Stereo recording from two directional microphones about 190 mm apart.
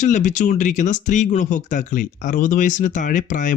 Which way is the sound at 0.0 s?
40° left (ahead or behind).